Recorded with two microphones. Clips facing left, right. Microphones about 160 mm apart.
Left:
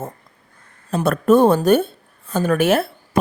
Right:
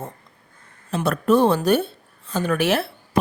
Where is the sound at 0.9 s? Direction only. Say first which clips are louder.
Left 4 dB; 50° left (ahead or behind).